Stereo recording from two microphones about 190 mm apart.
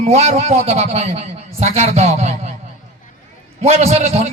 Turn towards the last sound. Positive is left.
turn(degrees=-35)  # may be behind; listen again after turning